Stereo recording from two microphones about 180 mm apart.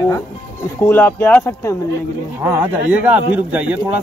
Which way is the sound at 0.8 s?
10° left (ahead or behind).